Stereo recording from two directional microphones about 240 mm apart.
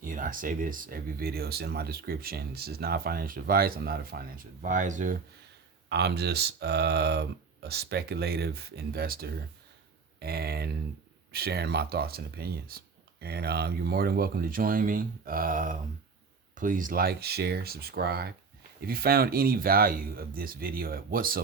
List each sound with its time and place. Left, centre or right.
0.0 s speech: right
5.9 s speech: right